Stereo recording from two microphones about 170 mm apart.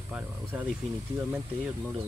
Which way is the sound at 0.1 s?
10° right (ahead or behind).